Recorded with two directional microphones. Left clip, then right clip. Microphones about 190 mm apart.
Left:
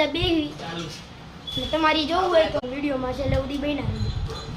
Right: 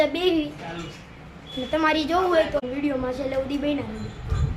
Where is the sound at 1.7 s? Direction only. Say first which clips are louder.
Even; 30° right (ahead or behind).